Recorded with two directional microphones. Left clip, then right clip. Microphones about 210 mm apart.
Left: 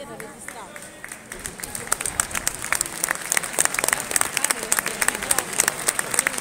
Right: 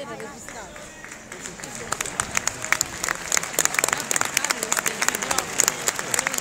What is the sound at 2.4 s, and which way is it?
Applause, 50° left (ahead or behind).